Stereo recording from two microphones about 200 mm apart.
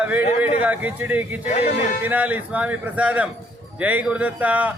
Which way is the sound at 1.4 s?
35° left (ahead or behind).